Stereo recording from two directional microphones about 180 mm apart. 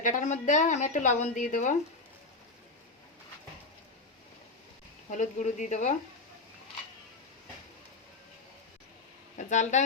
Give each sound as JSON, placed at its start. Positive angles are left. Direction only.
{"t": 0.0, "sound": "a woman's voice", "side_deg": 45}
{"t": 5.1, "sound": "speech", "side_deg": 40}
{"t": 9.4, "sound": "speech", "side_deg": 40}